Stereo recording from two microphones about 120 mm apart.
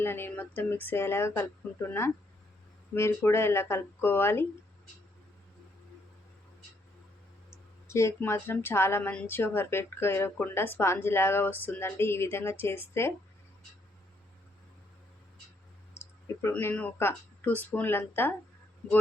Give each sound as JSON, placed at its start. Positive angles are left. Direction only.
{"t": 0.0, "sound": "speech", "side_deg": 20}
{"t": 7.5, "sound": "speech", "side_deg": 25}
{"t": 16.0, "sound": "speech", "side_deg": 20}